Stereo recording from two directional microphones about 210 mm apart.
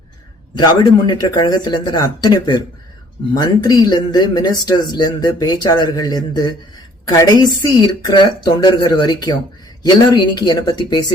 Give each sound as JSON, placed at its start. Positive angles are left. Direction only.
{"t": 0.5, "sound": "speech", "side_deg": 20}